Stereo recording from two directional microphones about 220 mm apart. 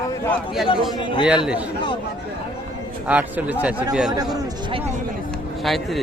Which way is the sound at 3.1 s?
5° right (ahead or behind).